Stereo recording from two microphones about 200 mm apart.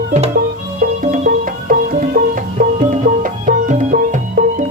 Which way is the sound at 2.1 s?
50° right (ahead or behind).